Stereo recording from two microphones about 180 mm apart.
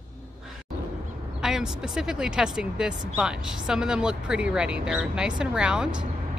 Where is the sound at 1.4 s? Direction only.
5° right (ahead or behind).